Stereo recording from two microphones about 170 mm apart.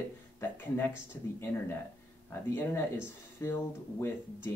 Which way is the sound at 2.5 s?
15° left (ahead or behind).